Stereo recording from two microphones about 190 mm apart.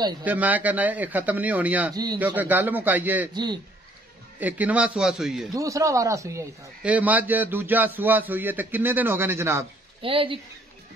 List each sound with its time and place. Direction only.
0.2 s a man's voice: 10° right (ahead or behind)
4.4 s a man's voice: 10° right (ahead or behind)
5.5 s a man's voice: 15° right (ahead or behind)
10.0 s speech: 30° right (ahead or behind)